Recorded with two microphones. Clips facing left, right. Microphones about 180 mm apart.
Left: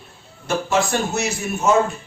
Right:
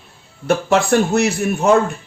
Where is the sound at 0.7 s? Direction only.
60° right (ahead or behind).